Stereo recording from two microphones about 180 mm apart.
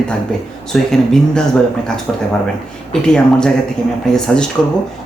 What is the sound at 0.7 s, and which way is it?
Speech, centre (ahead or behind).